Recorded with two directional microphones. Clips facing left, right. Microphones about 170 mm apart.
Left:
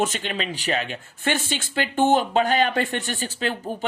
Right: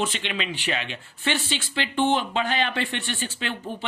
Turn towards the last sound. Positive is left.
turn(degrees=40)  # may be behind; listen again after turning